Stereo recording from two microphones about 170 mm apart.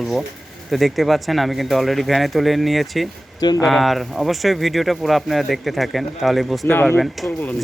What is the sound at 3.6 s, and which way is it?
Speech, centre (ahead or behind).